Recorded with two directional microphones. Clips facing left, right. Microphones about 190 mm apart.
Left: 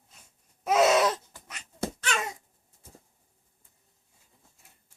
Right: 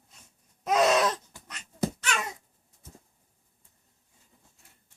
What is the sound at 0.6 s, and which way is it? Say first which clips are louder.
Baby cry: left 1 dB; 5° left (ahead or behind).